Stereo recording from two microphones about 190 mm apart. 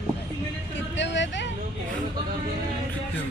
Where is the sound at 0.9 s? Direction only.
70° left (ahead or behind).